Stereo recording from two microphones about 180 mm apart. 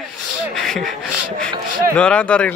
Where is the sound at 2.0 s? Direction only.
5° left (ahead or behind).